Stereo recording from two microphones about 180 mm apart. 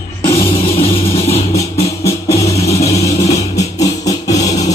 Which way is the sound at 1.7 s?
15° left (ahead or behind).